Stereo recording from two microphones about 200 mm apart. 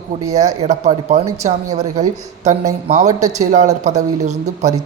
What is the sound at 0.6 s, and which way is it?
Speech, 35° right (ahead or behind).